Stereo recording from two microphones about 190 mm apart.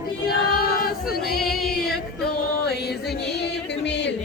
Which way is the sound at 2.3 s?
60° left (ahead or behind).